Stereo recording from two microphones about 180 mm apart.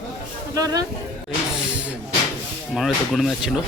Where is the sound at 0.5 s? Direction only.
20° right (ahead or behind).